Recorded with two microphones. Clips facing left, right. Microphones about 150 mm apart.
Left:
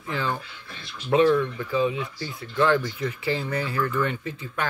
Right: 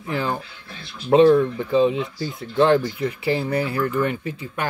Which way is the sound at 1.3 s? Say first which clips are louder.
Right 6 dB; 30° right (ahead or behind).